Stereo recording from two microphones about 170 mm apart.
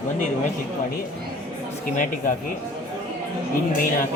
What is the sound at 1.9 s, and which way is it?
Speech, 50° left (ahead or behind).